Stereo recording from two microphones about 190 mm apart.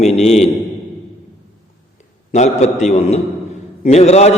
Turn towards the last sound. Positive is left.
turn(degrees=35)  # may be behind; listen again after turning